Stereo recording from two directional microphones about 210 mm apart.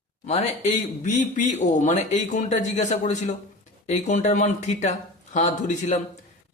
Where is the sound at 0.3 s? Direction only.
35° left (ahead or behind).